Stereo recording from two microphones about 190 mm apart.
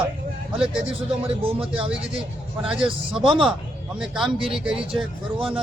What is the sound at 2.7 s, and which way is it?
Speech, 5° right (ahead or behind).